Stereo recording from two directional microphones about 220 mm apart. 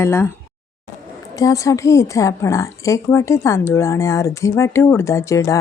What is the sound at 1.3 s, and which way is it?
A woman's voice, 15° left (ahead or behind).